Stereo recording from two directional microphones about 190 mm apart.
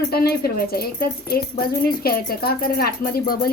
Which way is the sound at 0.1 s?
55° left (ahead or behind).